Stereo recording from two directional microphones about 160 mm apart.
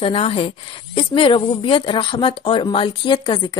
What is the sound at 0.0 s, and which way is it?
A woman's voice, 35° left (ahead or behind).